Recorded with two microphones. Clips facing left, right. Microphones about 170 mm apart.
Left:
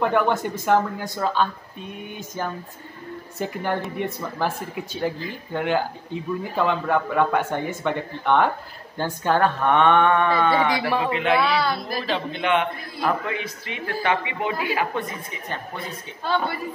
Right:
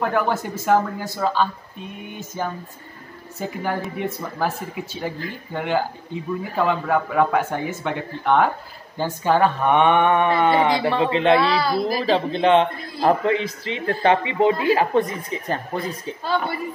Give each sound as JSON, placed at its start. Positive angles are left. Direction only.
{"t": 0.0, "sound": "speech", "side_deg": -5}
{"t": 11.3, "sound": "speech", "side_deg": 0}
{"t": 12.1, "sound": "speech", "side_deg": -30}